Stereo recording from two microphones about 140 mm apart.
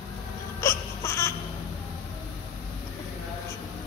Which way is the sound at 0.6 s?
20° left (ahead or behind).